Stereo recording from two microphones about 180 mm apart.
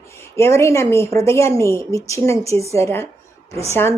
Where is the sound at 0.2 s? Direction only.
15° left (ahead or behind).